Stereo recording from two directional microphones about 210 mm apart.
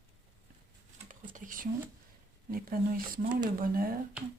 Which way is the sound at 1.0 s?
40° right (ahead or behind).